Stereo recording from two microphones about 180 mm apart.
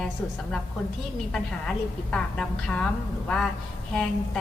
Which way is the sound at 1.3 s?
5° left (ahead or behind).